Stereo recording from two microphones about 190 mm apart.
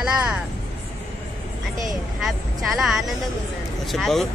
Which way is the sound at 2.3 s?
Centre (ahead or behind).